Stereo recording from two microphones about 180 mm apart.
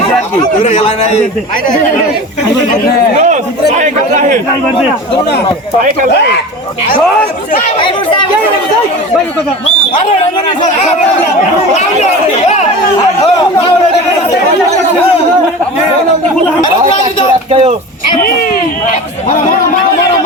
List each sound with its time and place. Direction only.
0.6 s a man's voice: 35° left (ahead or behind)
3.2 s a man's voice: 40° right (ahead or behind)
7.8 s chatter: 30° left (ahead or behind)
17.5 s a sound: 35° right (ahead or behind)